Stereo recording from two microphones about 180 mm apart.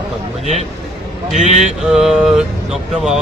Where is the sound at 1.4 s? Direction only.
40° right (ahead or behind).